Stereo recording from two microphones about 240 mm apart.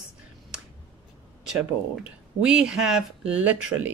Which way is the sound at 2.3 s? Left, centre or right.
Centre.